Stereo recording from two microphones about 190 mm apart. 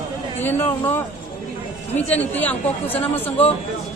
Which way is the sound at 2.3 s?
10° left (ahead or behind).